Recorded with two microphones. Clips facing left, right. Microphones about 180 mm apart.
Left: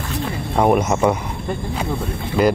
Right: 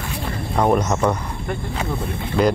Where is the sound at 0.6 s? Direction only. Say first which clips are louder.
Left 2 dB; 10° left (ahead or behind).